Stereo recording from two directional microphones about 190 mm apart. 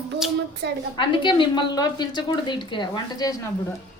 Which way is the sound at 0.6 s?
70° right (ahead or behind).